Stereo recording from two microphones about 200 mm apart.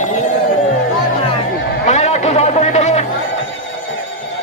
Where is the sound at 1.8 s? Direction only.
35° left (ahead or behind).